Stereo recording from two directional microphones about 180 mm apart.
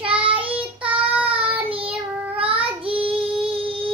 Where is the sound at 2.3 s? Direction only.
30° right (ahead or behind).